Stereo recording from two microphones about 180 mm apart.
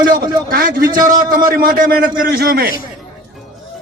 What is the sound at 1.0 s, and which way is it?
A man's voice, 50° right (ahead or behind).